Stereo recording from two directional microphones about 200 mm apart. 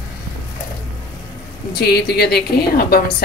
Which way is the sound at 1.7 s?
55° left (ahead or behind).